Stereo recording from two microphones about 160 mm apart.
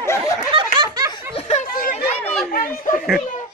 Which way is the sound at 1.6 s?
65° left (ahead or behind).